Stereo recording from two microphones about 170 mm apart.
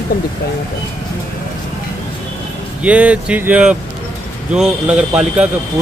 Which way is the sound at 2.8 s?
5° right (ahead or behind).